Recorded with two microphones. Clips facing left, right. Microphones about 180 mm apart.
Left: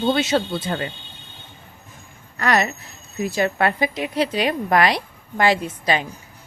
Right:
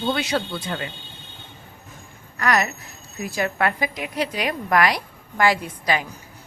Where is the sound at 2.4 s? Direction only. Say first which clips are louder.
Left 2 dB; 30° left (ahead or behind).